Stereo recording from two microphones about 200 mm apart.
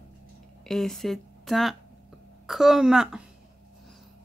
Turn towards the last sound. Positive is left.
turn(degrees=-5)  # may be behind; listen again after turning